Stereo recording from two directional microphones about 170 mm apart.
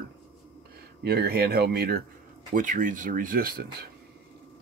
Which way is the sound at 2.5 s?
50° right (ahead or behind).